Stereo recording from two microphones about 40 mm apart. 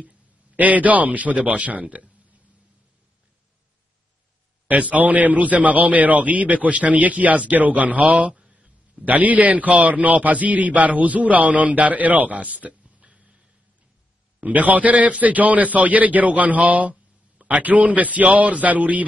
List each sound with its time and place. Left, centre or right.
0.6 s a man's voice: right
4.6 s a man's voice: right
8.5 s a sound: right
9.0 s a man's voice: right
14.4 s a man's voice: right